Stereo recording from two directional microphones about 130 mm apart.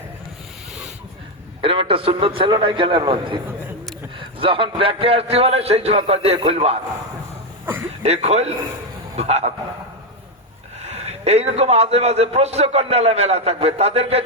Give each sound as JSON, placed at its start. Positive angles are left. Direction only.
{"t": 1.6, "sound": "a man's voice", "side_deg": -45}
{"t": 7.6, "sound": "a sound", "side_deg": -15}
{"t": 8.0, "sound": "speech", "side_deg": -55}
{"t": 10.8, "sound": "a man's voice", "side_deg": -55}